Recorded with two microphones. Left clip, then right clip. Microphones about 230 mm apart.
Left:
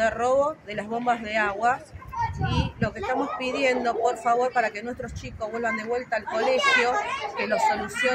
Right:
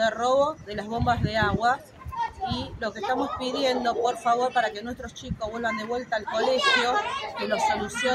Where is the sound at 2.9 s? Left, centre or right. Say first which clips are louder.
Right 1 dB; left.